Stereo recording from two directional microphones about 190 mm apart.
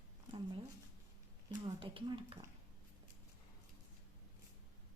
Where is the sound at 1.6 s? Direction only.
25° right (ahead or behind).